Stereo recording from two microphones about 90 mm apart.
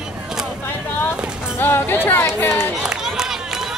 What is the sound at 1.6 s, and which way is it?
Speech, 25° left (ahead or behind).